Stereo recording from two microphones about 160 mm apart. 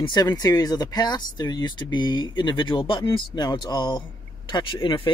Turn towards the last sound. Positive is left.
turn(degrees=30)  # may be behind; listen again after turning